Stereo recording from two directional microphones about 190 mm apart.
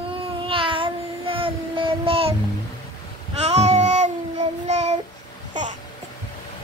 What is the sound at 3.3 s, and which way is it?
Child singing, 35° right (ahead or behind).